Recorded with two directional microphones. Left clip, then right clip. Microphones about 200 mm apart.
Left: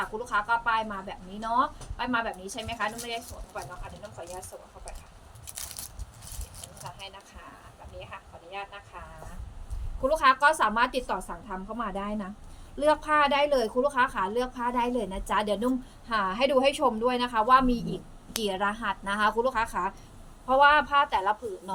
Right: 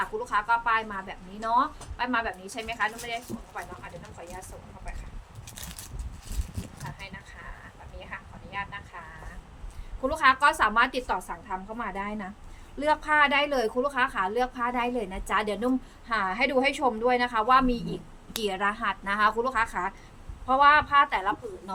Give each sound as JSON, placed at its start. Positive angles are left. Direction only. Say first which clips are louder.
{"t": 0.0, "sound": "a woman's voice", "louder": "right 1 dB", "side_deg": -15}
{"t": 10.1, "sound": "a woman's voice", "louder": "even", "side_deg": -15}